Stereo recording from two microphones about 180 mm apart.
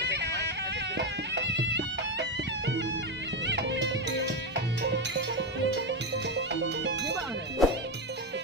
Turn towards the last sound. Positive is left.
turn(degrees=-75)  # may be behind; listen again after turning